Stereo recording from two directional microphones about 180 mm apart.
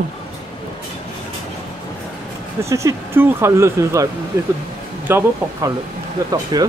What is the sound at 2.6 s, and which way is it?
Speech, 15° right (ahead or behind).